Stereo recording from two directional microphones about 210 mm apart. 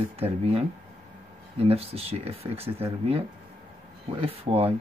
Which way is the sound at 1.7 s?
30° right (ahead or behind).